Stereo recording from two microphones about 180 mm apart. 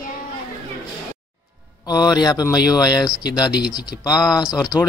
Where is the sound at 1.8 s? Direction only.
20° left (ahead or behind).